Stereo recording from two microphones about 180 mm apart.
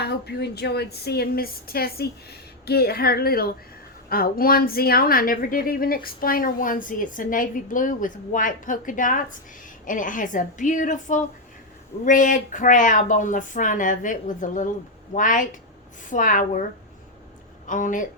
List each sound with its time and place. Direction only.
0.0 s a woman's voice: 65° left (ahead or behind); by 16.6 s 45° left (ahead or behind)
17.7 s a woman's voice: 45° left (ahead or behind)